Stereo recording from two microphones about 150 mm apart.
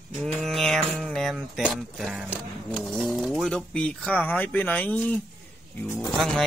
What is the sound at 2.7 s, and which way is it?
Speech, 5° left (ahead or behind).